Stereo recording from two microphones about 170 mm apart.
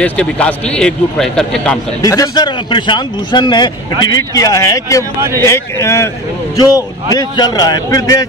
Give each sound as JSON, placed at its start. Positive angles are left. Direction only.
{"t": 0.0, "sound": "a man's voice", "side_deg": 5}
{"t": 2.0, "sound": "a man's voice", "side_deg": 20}